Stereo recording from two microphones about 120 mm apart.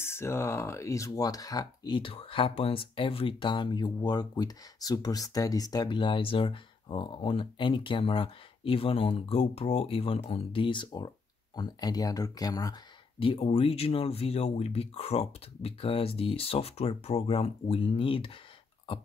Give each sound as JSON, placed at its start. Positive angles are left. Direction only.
{"t": 0.0, "sound": "speech", "side_deg": 20}
{"t": 2.0, "sound": "speech", "side_deg": 50}
{"t": 5.9, "sound": "speech", "side_deg": 45}
{"t": 13.2, "sound": "speech", "side_deg": 50}